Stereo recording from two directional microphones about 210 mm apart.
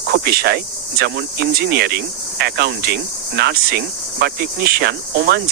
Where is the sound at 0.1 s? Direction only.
50° right (ahead or behind).